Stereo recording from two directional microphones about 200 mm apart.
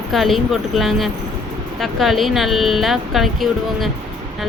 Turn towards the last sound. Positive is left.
turn(degrees=0)  # may be behind; listen again after turning